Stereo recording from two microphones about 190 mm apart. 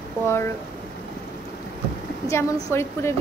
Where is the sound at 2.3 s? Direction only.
15° left (ahead or behind).